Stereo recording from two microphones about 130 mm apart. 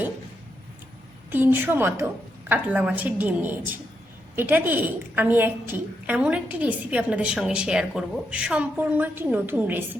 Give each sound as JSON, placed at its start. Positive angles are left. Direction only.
{"t": 1.3, "sound": "a woman's voice", "side_deg": -15}